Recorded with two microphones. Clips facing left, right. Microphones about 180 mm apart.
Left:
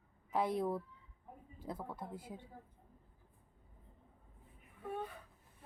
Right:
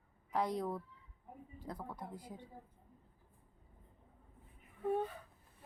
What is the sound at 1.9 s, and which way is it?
Speech, 25° left (ahead or behind).